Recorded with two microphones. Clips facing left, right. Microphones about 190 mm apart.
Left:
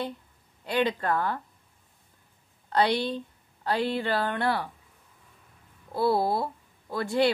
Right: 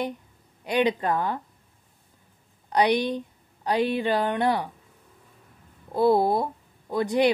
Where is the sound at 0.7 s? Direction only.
15° right (ahead or behind).